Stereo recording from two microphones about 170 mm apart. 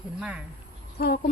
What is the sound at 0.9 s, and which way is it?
Speech, 60° left (ahead or behind).